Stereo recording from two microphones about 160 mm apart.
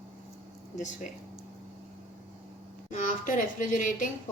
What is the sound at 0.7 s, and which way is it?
Speech, 50° left (ahead or behind).